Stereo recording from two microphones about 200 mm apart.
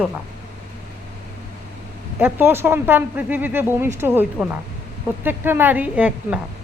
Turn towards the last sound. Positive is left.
turn(degrees=-5)  # may be behind; listen again after turning